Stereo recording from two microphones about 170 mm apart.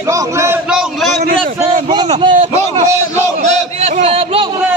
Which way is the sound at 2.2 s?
30° right (ahead or behind).